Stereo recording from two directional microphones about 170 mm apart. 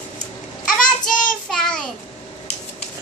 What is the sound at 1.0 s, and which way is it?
Child singing, 50° left (ahead or behind).